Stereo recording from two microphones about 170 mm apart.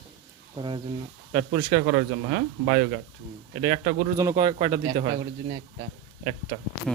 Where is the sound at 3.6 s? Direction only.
35° right (ahead or behind).